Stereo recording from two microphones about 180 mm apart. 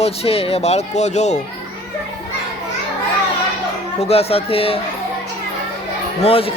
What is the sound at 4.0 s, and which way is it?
Speech, 35° left (ahead or behind).